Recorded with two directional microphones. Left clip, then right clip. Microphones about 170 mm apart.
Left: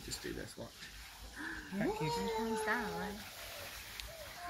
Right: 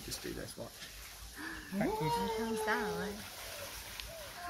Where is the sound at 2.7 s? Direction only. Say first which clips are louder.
Right 2 dB; 15° right (ahead or behind).